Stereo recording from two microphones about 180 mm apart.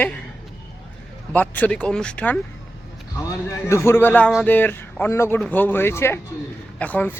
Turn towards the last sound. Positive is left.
turn(degrees=10)  # may be behind; listen again after turning